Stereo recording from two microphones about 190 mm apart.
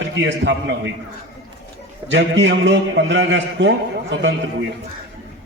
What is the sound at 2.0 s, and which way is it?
A man's voice, 70° right (ahead or behind).